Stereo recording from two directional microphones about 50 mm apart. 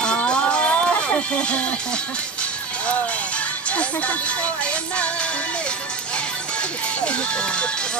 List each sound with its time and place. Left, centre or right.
0.0 s music: centre
3.7 s music: left
7.1 s speech: left